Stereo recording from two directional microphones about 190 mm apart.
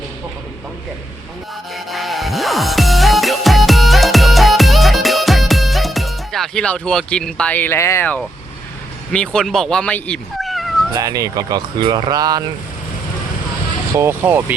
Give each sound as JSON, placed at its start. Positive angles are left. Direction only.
{"t": 1.7, "sound": "music", "side_deg": 0}
{"t": 9.1, "sound": "speech", "side_deg": 5}
{"t": 10.9, "sound": "speech", "side_deg": -20}
{"t": 13.9, "sound": "speech", "side_deg": -15}